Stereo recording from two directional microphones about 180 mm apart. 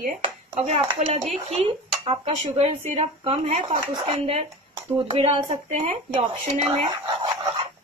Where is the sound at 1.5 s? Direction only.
30° right (ahead or behind).